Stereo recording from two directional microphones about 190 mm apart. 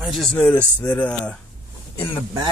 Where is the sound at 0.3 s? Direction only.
10° left (ahead or behind).